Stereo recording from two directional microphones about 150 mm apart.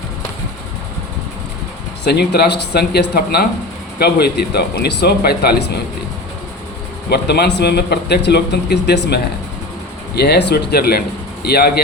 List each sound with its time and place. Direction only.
2.0 s a man's voice: 90° left
7.1 s a man's voice: 90° left